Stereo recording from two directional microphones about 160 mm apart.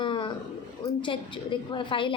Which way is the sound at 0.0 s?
30° left (ahead or behind).